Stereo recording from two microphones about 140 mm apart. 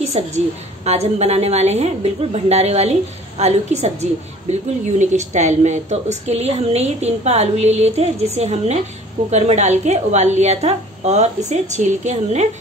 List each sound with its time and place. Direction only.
0.0 s a woman's voice: 50° right (ahead or behind)